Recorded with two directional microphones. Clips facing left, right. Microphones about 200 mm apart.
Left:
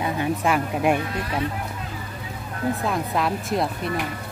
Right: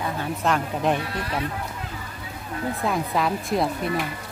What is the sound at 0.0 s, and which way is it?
Speech, 15° left (ahead or behind).